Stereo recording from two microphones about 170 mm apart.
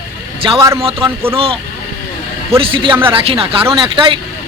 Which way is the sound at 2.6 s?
30° right (ahead or behind).